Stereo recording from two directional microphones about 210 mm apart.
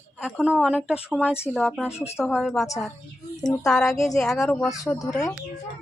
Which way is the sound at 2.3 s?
Centre (ahead or behind).